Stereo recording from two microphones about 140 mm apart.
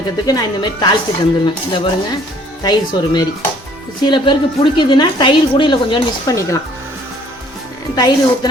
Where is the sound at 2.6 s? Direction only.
30° left (ahead or behind).